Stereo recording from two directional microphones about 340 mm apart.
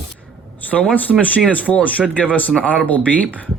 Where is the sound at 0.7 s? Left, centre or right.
Centre.